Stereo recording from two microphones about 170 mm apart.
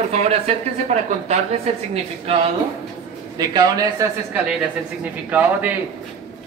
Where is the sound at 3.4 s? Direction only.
25° right (ahead or behind).